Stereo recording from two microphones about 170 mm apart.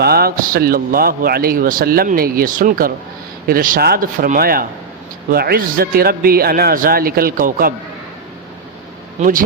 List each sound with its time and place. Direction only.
0.0 s a man's voice: 65° right (ahead or behind)
9.2 s speech: 45° right (ahead or behind)